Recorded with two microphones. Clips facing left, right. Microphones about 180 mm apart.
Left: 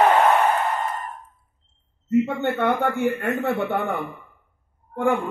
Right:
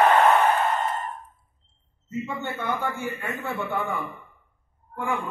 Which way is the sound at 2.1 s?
65° left (ahead or behind).